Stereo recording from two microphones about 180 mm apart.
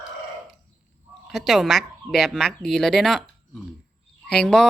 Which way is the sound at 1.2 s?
Centre (ahead or behind).